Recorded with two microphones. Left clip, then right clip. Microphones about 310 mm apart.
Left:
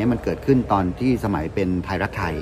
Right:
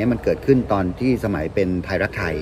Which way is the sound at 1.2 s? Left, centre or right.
Centre.